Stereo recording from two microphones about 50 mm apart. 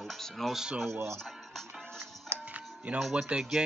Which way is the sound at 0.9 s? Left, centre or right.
Right.